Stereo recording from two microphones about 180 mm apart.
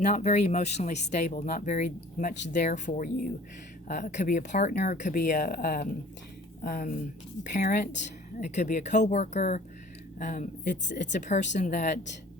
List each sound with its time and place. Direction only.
0.0 s speech: 40° left (ahead or behind)